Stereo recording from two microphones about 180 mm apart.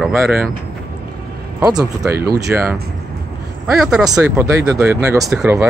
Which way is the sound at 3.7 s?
Centre (ahead or behind).